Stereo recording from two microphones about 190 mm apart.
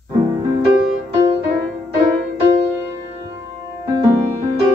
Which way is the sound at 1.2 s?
15° right (ahead or behind).